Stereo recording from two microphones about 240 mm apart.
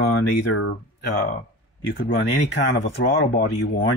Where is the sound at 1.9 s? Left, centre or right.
Left.